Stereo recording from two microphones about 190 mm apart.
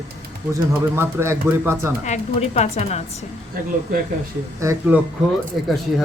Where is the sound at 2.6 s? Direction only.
35° left (ahead or behind).